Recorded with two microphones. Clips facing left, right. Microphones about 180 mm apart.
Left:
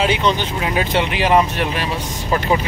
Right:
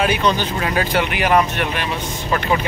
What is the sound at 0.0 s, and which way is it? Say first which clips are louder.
Speech: even; 25° left (ahead or behind).